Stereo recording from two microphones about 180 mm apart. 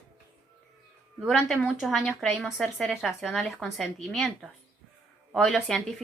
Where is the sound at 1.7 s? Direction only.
Centre (ahead or behind).